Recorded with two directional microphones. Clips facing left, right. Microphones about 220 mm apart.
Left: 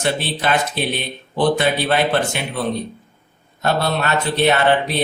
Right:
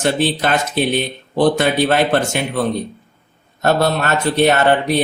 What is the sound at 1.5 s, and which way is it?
Speech, 45° right (ahead or behind).